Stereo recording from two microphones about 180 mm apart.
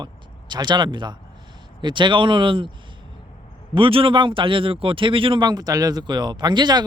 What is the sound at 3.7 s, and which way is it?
Speech, 30° right (ahead or behind).